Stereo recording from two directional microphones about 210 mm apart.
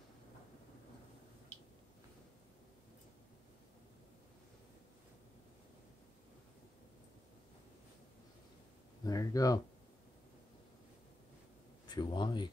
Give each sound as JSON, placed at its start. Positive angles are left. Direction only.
{"t": 9.0, "sound": "speech", "side_deg": 15}
{"t": 11.9, "sound": "speech", "side_deg": 20}